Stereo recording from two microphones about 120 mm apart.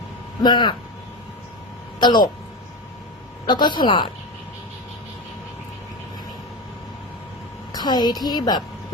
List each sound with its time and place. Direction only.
0.4 s a woman's voice: 40° left (ahead or behind)
2.0 s a woman's voice: 35° left (ahead or behind)
3.4 s a woman's voice: 40° left (ahead or behind)
7.7 s a woman's voice: 35° left (ahead or behind)